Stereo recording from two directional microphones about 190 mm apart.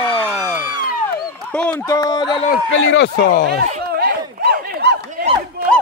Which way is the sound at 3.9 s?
55° right (ahead or behind).